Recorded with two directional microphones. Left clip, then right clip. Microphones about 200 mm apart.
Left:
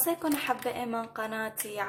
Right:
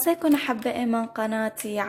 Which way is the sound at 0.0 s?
35° right (ahead or behind).